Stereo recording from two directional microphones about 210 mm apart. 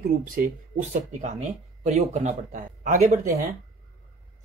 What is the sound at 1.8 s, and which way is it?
Speech, 35° right (ahead or behind).